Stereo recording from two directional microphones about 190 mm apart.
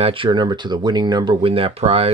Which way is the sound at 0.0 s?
25° right (ahead or behind).